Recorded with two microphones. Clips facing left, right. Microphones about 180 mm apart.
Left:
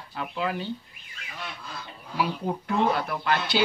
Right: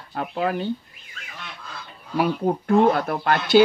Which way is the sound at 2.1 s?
50° right (ahead or behind).